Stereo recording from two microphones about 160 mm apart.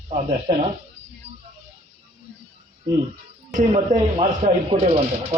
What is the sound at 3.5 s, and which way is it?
Speech, 50° right (ahead or behind).